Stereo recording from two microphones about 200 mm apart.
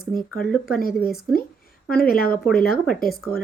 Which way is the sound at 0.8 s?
45° left (ahead or behind).